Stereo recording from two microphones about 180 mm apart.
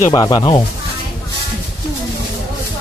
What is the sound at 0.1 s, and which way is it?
Speech, 20° left (ahead or behind).